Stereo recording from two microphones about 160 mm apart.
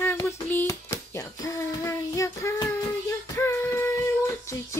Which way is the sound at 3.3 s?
15° left (ahead or behind).